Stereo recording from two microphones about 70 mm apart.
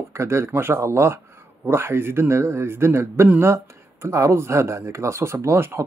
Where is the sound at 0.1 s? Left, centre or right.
Right.